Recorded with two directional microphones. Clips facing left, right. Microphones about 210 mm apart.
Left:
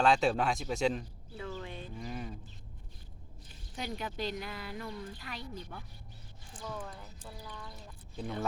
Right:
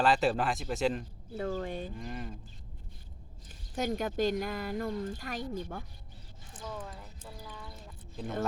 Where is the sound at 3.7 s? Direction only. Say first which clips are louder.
Right 8 dB; 45° right (ahead or behind).